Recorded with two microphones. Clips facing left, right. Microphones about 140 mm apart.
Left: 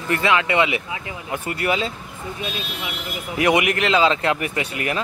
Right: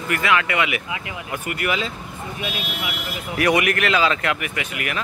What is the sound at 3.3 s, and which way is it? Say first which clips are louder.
Speech: left 1 dB; 20° left (ahead or behind).